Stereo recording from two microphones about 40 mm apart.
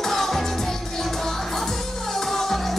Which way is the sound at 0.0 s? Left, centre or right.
Centre.